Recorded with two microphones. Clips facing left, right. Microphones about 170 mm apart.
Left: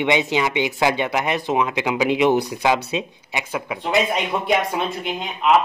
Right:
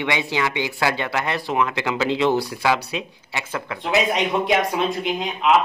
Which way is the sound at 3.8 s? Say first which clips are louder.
Right 1 dB; centre (ahead or behind).